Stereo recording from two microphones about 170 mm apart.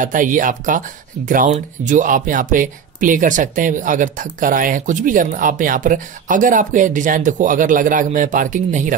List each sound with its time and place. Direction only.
0.0 s speech: 50° right (ahead or behind)